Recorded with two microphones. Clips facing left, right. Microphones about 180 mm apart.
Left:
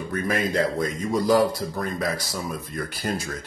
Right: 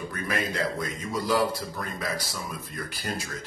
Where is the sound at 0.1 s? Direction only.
45° left (ahead or behind).